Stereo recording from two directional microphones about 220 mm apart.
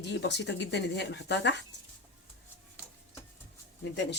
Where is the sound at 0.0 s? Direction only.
50° left (ahead or behind).